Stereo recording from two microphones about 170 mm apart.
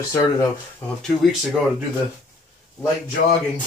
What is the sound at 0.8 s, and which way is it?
Speech, 10° left (ahead or behind).